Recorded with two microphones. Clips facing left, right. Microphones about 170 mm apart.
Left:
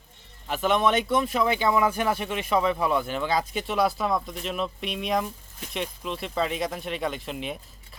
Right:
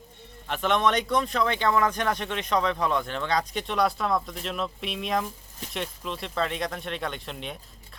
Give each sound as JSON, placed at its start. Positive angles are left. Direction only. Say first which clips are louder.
{"t": 0.4, "sound": "speech", "louder": "left 1 dB", "side_deg": 5}